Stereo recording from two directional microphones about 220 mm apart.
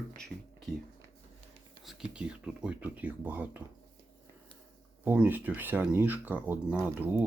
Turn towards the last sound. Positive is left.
turn(degrees=-10)  # may be behind; listen again after turning